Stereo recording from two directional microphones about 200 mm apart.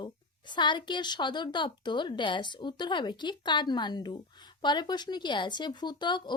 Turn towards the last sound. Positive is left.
turn(degrees=20)  # may be behind; listen again after turning